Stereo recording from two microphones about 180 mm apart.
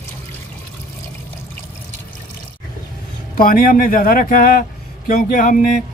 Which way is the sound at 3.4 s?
55° left (ahead or behind).